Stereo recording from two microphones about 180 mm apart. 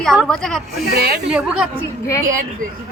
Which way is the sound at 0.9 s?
65° right (ahead or behind).